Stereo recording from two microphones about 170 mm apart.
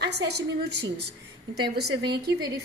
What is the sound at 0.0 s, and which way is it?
A woman's voice, 75° right (ahead or behind).